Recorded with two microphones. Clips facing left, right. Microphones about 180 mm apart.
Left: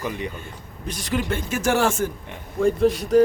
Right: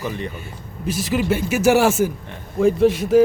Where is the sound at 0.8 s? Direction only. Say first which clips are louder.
Right 5 dB; 5° right (ahead or behind).